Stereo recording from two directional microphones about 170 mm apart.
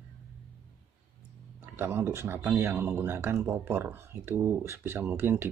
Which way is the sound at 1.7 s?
15° right (ahead or behind).